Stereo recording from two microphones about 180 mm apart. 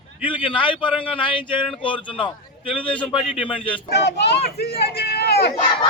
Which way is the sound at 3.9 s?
70° left (ahead or behind).